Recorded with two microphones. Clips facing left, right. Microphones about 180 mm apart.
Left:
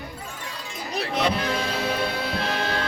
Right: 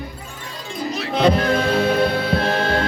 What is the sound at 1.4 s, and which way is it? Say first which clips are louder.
Music: right 8 dB; 55° right (ahead or behind).